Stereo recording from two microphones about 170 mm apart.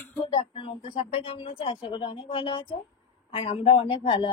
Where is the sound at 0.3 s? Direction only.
35° left (ahead or behind).